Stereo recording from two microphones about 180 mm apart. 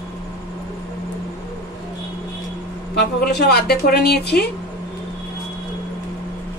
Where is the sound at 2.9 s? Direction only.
65° left (ahead or behind).